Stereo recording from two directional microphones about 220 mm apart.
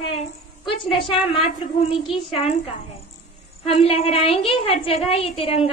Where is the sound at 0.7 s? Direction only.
25° left (ahead or behind).